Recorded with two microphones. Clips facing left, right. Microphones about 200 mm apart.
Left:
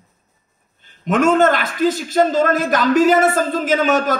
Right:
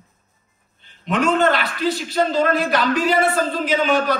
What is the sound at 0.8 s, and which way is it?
A man's voice, 45° left (ahead or behind).